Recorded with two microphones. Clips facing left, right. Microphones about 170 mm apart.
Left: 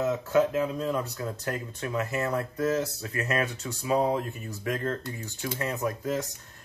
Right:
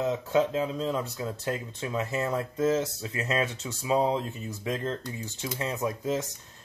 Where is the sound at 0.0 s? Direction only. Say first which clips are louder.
Left 1 dB; 20° right (ahead or behind).